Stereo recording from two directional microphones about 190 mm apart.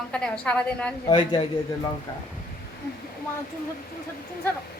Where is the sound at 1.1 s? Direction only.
25° left (ahead or behind).